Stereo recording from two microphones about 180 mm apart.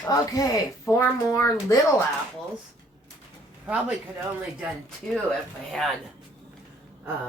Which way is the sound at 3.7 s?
10° right (ahead or behind).